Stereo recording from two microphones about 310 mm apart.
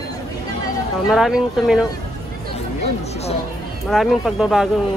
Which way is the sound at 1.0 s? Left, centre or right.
Centre.